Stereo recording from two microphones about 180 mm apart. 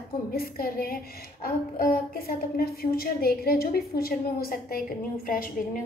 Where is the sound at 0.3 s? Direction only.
55° left (ahead or behind).